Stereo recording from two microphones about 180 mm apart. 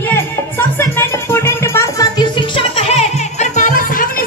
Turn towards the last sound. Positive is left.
turn(degrees=50)  # may be behind; listen again after turning